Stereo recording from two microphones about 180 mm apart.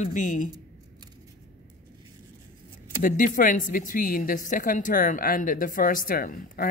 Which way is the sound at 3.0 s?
50° left (ahead or behind).